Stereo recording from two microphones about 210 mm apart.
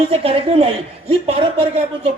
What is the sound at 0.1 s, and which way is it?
A man's voice, 25° right (ahead or behind).